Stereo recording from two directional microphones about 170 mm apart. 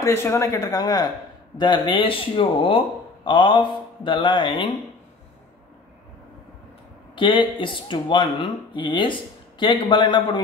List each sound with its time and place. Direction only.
0.0 s speech: 15° left (ahead or behind)
7.2 s speech: 30° left (ahead or behind)